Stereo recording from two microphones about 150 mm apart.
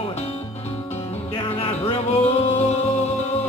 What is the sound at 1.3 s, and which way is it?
Music, 35° left (ahead or behind).